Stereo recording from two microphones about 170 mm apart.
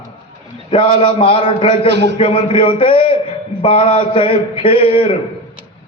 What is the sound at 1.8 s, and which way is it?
Speech, 90° right.